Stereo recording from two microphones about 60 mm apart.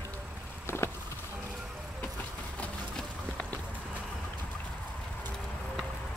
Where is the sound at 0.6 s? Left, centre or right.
Left.